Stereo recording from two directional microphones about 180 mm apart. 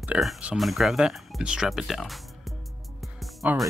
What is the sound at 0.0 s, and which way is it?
Speech, 5° right (ahead or behind).